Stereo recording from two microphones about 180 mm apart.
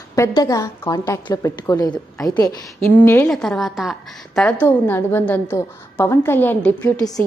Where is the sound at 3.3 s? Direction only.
Centre (ahead or behind).